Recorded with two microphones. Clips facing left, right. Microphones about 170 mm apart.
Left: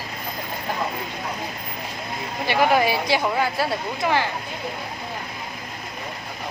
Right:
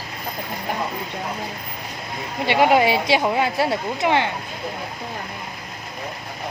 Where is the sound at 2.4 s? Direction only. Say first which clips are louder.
Right 3 dB; 20° right (ahead or behind).